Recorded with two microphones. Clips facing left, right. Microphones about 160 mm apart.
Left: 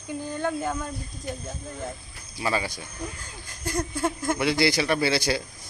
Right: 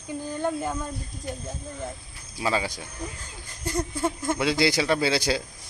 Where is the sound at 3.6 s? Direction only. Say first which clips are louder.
Even; centre (ahead or behind).